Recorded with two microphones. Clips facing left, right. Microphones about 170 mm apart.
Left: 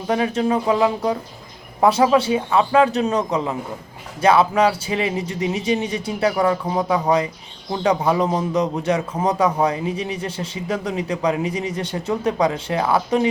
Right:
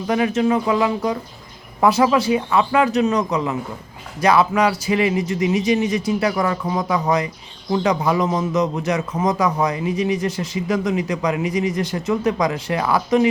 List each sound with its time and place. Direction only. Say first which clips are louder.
0.1 s a man's voice: right 1 dB; 30° left (ahead or behind)